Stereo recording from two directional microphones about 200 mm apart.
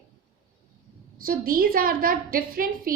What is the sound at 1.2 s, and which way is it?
A woman's voice, 45° right (ahead or behind).